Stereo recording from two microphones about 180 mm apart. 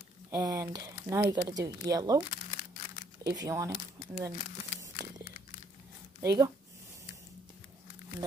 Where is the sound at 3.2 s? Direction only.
20° right (ahead or behind).